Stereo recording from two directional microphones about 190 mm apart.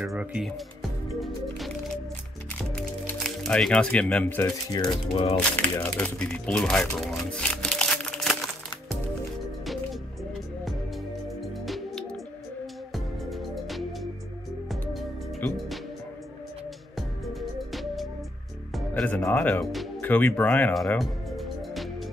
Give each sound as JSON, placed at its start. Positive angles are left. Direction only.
{"t": 0.0, "sound": "speech", "side_deg": -5}
{"t": 3.3, "sound": "speech", "side_deg": 5}
{"t": 5.1, "sound": "speech", "side_deg": 30}
{"t": 5.6, "sound": "speech", "side_deg": 5}
{"t": 11.6, "sound": "music", "side_deg": 0}
{"t": 17.3, "sound": "music", "side_deg": 0}